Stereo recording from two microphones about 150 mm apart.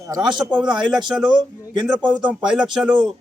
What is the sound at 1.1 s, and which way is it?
Speech, 5° right (ahead or behind).